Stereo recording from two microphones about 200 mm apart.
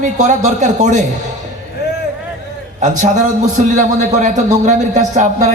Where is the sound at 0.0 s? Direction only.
35° right (ahead or behind).